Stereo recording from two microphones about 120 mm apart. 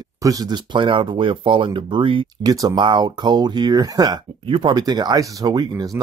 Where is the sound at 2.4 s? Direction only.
30° right (ahead or behind).